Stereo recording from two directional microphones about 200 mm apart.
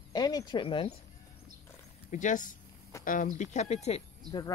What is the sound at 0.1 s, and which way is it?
Speech, 20° left (ahead or behind).